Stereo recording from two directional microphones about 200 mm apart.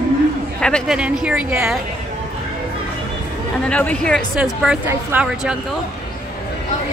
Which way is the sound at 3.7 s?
5° left (ahead or behind).